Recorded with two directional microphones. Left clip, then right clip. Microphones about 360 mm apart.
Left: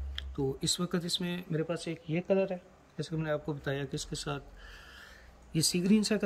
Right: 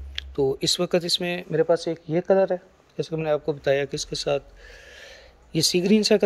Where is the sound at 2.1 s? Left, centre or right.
Right.